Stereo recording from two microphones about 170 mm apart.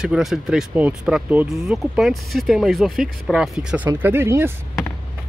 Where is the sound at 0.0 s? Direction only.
5° right (ahead or behind).